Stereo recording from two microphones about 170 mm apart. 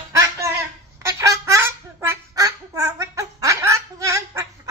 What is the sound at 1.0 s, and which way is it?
Duck, 15° right (ahead or behind).